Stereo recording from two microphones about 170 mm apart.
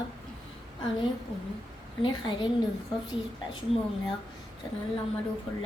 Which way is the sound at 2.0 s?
30° left (ahead or behind).